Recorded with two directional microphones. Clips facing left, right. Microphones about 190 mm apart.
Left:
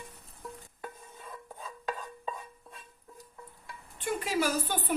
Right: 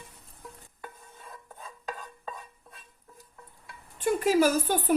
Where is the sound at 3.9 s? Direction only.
45° right (ahead or behind).